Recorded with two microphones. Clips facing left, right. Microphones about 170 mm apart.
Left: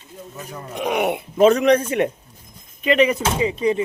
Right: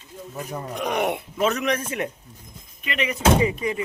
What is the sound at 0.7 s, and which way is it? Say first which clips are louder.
Speech: left 4 dB; 5° left (ahead or behind).